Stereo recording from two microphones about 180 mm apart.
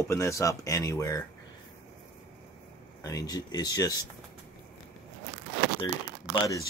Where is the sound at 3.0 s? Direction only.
20° left (ahead or behind).